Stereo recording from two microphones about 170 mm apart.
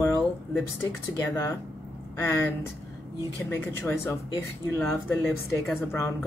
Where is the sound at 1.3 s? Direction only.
20° left (ahead or behind).